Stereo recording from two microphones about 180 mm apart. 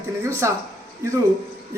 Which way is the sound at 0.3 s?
15° right (ahead or behind).